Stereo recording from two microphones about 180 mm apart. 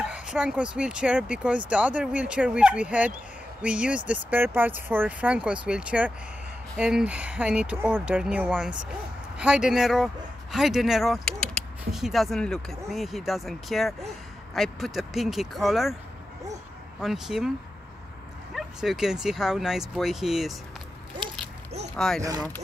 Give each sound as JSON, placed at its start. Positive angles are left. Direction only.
{"t": 0.0, "sound": "speech", "side_deg": -5}
{"t": 17.0, "sound": "speech", "side_deg": 0}
{"t": 18.5, "sound": "speech", "side_deg": 0}
{"t": 21.9, "sound": "speech", "side_deg": 5}
{"t": 22.2, "sound": "speech", "side_deg": -20}